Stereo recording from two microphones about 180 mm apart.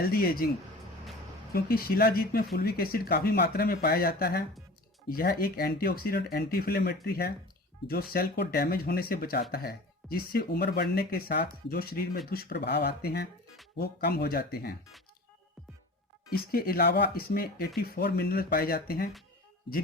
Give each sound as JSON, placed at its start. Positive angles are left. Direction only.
{"t": 0.0, "sound": "speech", "side_deg": 55}
{"t": 1.5, "sound": "speech", "side_deg": 55}
{"t": 16.3, "sound": "speech", "side_deg": 55}